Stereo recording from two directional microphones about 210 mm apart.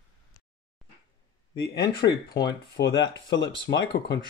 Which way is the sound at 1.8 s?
20° left (ahead or behind).